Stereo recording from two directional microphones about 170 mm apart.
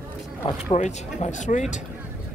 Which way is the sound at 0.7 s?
40° left (ahead or behind).